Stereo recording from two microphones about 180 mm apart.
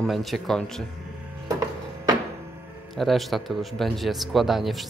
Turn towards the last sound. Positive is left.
turn(degrees=0)  # may be behind; listen again after turning